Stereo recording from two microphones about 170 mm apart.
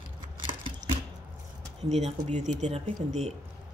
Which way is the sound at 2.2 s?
45° right (ahead or behind).